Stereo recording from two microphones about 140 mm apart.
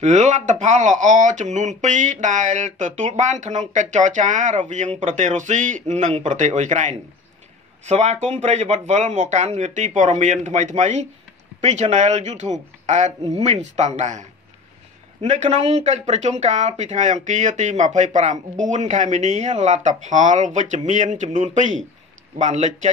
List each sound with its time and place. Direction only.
0.0 s speech: 55° right (ahead or behind)
15.2 s speech: 55° right (ahead or behind)